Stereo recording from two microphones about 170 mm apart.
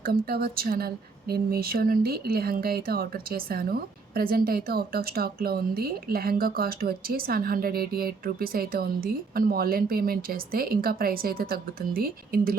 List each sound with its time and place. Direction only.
0.0 s speech: 65° right (ahead or behind)